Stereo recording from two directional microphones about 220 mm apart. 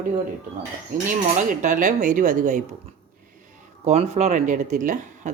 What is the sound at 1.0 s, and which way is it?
Speech, 35° right (ahead or behind).